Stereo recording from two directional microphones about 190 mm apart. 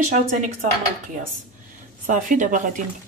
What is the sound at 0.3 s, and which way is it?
Speech, 40° right (ahead or behind).